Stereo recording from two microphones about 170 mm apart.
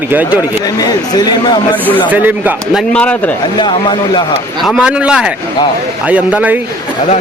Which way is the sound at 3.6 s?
25° left (ahead or behind).